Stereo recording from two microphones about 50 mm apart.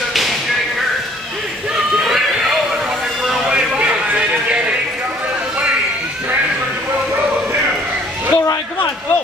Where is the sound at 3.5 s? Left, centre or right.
Centre.